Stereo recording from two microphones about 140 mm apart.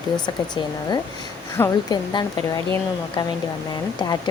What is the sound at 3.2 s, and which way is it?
Speech, 35° left (ahead or behind).